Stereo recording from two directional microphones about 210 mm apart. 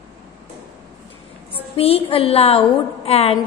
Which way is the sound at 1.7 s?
25° left (ahead or behind).